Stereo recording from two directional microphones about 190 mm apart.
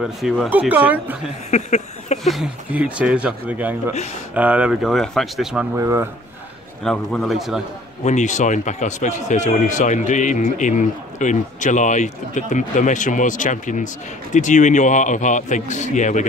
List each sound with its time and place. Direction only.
0.0 s speech: centre (ahead or behind)
1.5 s a sound: 35° left (ahead or behind)
2.2 s speech: centre (ahead or behind)
5.8 s speech: 15° right (ahead or behind)
6.8 s speech: centre (ahead or behind)
8.0 s a man's voice: 40° left (ahead or behind)